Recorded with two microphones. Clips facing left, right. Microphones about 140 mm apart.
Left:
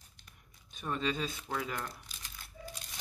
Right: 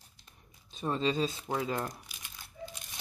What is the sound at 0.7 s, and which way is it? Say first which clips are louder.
Speech: right 4 dB; 25° right (ahead or behind).